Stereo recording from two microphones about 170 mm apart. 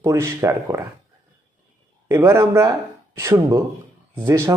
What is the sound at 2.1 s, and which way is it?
Speech, 15° right (ahead or behind).